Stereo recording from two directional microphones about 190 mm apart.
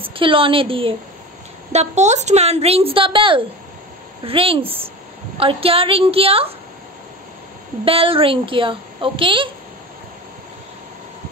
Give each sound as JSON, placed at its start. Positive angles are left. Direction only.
{"t": 0.0, "sound": "a woman's voice", "side_deg": -30}
{"t": 7.8, "sound": "a child's voice", "side_deg": -30}